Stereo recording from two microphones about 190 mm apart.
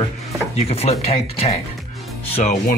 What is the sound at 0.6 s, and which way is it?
Speech, 35° left (ahead or behind).